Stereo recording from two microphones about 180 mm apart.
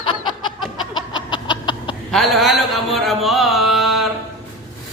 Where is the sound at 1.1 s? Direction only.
25° left (ahead or behind).